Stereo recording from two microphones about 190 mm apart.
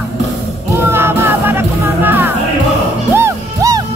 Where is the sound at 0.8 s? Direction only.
10° right (ahead or behind).